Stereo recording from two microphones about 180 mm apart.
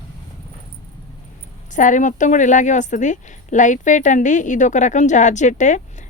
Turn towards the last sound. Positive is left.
turn(degrees=45)  # may be behind; listen again after turning